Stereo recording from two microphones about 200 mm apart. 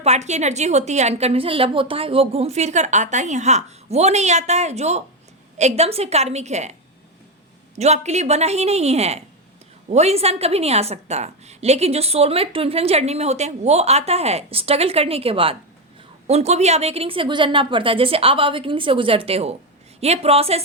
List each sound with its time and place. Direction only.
0.0 s a woman's voice: 35° right (ahead or behind)
7.8 s a woman's voice: 35° right (ahead or behind)